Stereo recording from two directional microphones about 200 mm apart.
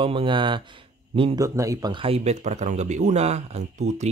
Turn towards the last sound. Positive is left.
turn(degrees=-35)  # may be behind; listen again after turning